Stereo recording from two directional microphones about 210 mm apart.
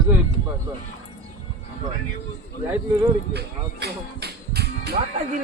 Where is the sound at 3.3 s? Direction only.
50° right (ahead or behind).